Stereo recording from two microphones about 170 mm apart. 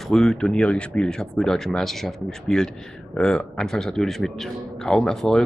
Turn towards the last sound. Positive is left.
turn(degrees=0)  # may be behind; listen again after turning